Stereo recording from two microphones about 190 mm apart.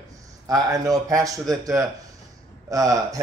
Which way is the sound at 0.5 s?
20° right (ahead or behind).